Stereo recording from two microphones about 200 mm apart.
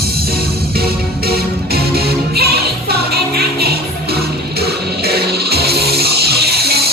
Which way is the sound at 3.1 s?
50° right (ahead or behind).